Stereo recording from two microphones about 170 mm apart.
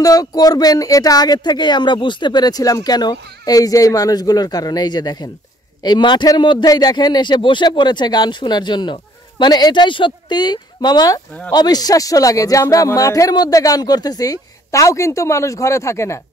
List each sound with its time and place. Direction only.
0.0 s a man's voice: 20° left (ahead or behind)